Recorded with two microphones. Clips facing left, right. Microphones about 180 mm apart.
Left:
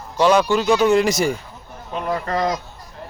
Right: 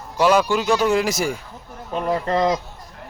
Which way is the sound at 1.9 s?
30° right (ahead or behind).